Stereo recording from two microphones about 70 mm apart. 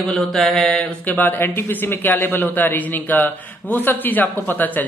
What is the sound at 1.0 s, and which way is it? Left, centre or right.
A man's voice, left.